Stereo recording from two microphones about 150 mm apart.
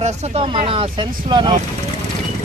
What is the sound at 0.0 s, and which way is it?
Speech, 50° right (ahead or behind).